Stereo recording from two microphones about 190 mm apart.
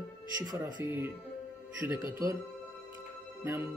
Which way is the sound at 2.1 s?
15° right (ahead or behind).